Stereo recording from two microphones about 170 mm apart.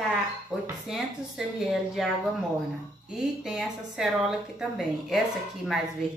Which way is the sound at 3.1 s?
5° right (ahead or behind).